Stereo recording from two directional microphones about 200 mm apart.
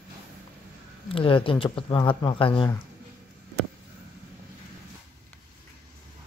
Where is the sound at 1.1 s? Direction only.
25° left (ahead or behind).